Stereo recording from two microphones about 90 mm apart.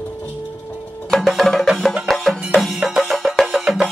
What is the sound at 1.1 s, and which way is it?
Music, centre (ahead or behind).